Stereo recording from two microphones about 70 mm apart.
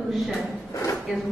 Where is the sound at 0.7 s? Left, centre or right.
Left.